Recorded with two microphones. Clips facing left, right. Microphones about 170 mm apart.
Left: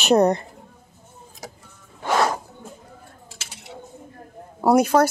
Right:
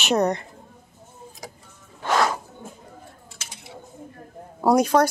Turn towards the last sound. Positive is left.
turn(degrees=5)  # may be behind; listen again after turning